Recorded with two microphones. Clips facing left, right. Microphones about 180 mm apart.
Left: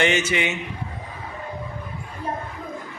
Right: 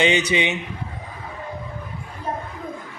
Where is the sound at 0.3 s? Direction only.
20° right (ahead or behind).